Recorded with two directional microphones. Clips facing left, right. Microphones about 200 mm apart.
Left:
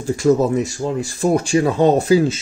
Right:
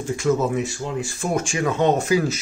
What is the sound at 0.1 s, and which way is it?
Speech, 40° left (ahead or behind).